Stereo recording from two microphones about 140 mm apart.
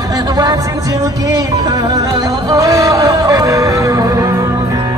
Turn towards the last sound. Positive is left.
turn(degrees=-25)  # may be behind; listen again after turning